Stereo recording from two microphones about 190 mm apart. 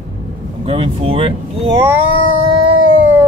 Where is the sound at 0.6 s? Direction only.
30° right (ahead or behind).